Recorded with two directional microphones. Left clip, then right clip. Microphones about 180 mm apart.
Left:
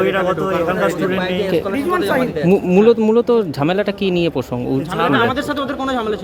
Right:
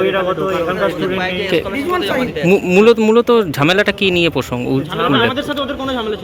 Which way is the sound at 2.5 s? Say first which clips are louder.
Right 3 dB; 5° left (ahead or behind).